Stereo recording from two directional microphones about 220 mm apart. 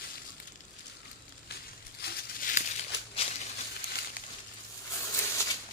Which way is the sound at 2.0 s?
45° left (ahead or behind).